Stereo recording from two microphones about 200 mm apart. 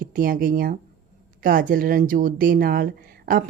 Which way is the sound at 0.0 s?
45° right (ahead or behind).